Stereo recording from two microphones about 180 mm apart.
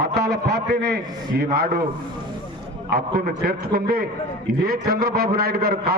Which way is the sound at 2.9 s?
55° right (ahead or behind).